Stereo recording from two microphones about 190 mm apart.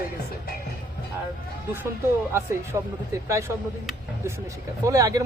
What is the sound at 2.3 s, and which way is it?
Speech, 15° right (ahead or behind).